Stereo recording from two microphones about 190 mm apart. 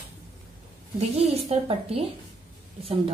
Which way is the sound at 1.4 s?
30° right (ahead or behind).